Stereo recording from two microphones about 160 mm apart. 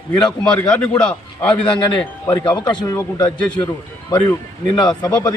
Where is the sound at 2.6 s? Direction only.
25° left (ahead or behind).